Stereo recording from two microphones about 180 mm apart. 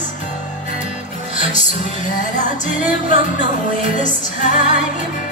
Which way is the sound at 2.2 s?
45° left (ahead or behind).